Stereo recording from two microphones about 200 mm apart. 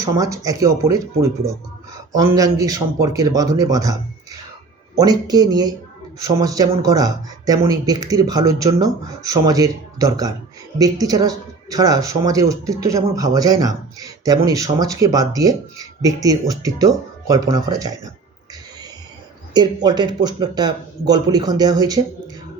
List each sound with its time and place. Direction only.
0.0 s a woman's voice: 15° right (ahead or behind)
4.9 s a woman's voice: 20° right (ahead or behind)
19.5 s speech: 20° right (ahead or behind)